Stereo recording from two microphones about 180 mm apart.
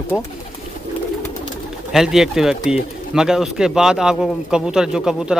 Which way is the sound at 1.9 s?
Centre (ahead or behind).